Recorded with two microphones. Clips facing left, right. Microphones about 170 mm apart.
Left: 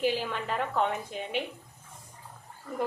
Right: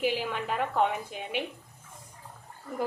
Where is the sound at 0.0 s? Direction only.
10° right (ahead or behind).